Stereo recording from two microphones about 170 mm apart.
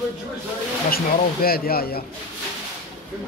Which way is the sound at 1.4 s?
60° left (ahead or behind).